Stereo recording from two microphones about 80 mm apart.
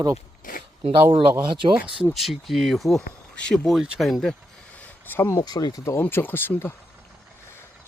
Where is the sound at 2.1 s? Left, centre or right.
Centre.